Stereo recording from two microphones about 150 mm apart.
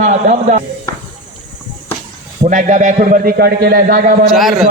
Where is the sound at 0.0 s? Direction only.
50° right (ahead or behind).